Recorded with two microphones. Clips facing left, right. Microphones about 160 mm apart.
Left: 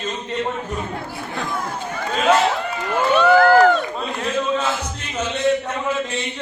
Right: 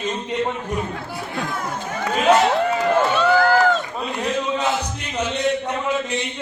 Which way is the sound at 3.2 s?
55° left (ahead or behind).